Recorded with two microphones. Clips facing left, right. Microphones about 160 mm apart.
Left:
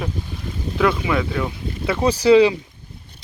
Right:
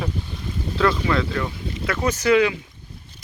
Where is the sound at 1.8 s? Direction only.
25° left (ahead or behind).